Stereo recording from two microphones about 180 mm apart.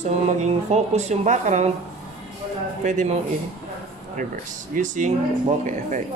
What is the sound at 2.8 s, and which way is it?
Speech, 40° right (ahead or behind).